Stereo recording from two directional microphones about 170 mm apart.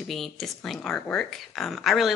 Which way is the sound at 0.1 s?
Centre (ahead or behind).